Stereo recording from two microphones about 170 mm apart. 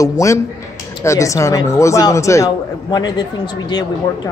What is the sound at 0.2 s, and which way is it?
A man's voice, 20° left (ahead or behind).